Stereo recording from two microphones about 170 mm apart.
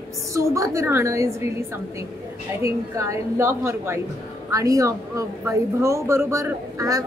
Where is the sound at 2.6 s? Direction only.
15° right (ahead or behind).